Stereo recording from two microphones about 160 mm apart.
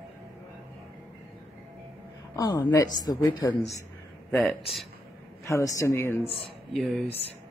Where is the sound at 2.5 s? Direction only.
10° left (ahead or behind).